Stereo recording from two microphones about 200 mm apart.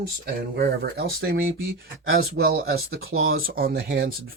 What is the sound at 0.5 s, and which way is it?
Speech, 50° right (ahead or behind).